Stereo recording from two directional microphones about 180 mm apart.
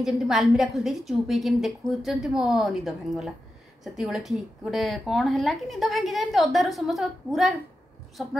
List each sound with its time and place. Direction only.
0.0 s a woman's voice: centre (ahead or behind)